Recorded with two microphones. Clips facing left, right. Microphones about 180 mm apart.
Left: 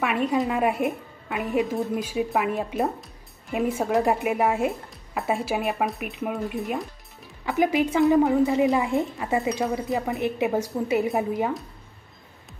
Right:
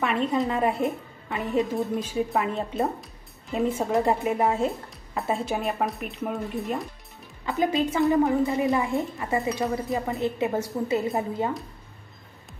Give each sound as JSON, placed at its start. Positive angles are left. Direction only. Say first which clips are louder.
{"t": 0.0, "sound": "a woman's voice", "louder": "left 1 dB", "side_deg": 10}
{"t": 7.4, "sound": "a woman's voice", "louder": "left 2 dB", "side_deg": 15}